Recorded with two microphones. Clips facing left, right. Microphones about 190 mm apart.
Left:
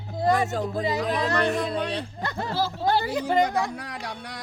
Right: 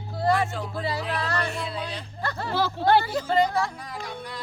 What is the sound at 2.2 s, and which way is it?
Speech, 15° left (ahead or behind).